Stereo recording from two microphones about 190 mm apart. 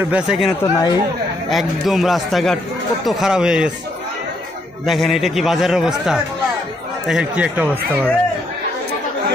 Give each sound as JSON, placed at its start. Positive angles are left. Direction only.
{"t": 0.0, "sound": "a man's voice", "side_deg": -5}
{"t": 0.6, "sound": "speech", "side_deg": 15}
{"t": 1.5, "sound": "a man's voice", "side_deg": 0}
{"t": 4.8, "sound": "a man's voice", "side_deg": 0}